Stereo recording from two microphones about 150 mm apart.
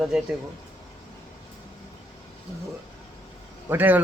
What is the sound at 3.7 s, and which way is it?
Speech, 10° right (ahead or behind).